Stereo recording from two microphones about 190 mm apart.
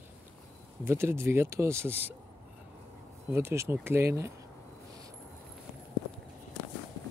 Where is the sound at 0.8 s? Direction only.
15° right (ahead or behind).